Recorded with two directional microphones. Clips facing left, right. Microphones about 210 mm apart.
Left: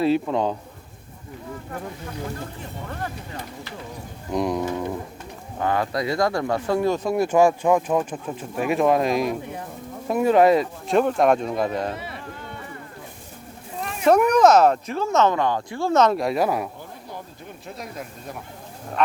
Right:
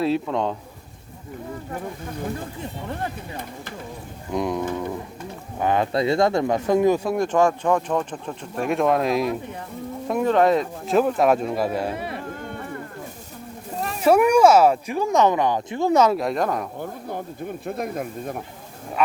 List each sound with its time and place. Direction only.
0.0 s speech: centre (ahead or behind)
4.3 s speech: centre (ahead or behind)
5.5 s speech: 20° right (ahead or behind)
7.0 s speech: 5° left (ahead or behind)
11.9 s a sound: 50° right (ahead or behind)
13.7 s a sound: 40° right (ahead or behind)
14.0 s speech: 10° right (ahead or behind)
16.1 s speech: 5° left (ahead or behind)
16.8 s speech: 55° right (ahead or behind)
19.0 s speech: 10° right (ahead or behind)